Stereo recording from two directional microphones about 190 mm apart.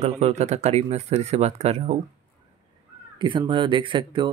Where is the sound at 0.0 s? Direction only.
35° right (ahead or behind).